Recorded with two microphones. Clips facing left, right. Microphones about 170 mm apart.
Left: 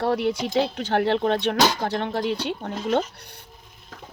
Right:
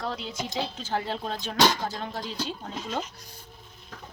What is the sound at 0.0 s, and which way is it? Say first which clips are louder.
Speech: left 10 dB; 65° left (ahead or behind).